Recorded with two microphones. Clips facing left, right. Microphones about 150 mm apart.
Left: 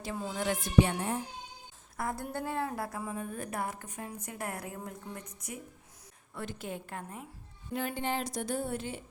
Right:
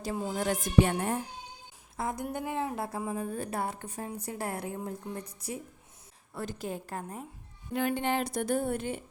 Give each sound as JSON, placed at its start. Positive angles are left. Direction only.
{"t": 0.0, "sound": "speech", "side_deg": -40}
{"t": 2.0, "sound": "a woman's voice", "side_deg": -20}
{"t": 7.8, "sound": "a sound", "side_deg": -60}